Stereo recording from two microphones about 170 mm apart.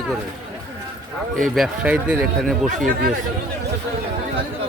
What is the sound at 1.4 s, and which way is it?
Speech, centre (ahead or behind).